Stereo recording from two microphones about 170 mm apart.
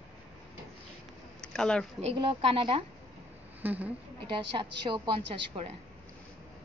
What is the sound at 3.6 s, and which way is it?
Speech, 10° right (ahead or behind).